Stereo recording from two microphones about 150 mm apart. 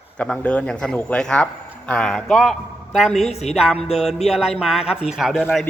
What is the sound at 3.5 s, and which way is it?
Speech, 5° right (ahead or behind).